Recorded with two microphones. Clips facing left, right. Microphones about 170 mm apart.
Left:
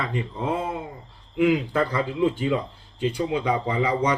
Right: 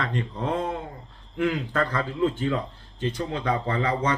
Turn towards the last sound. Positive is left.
turn(degrees=10)  # may be behind; listen again after turning